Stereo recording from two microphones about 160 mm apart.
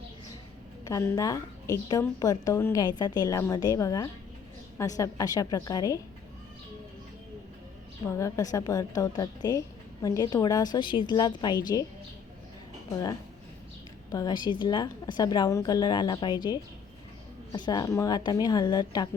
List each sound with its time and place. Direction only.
0.9 s a woman's voice: 20° left (ahead or behind)
8.0 s a woman's voice: 20° left (ahead or behind)
12.9 s a woman's voice: 20° left (ahead or behind)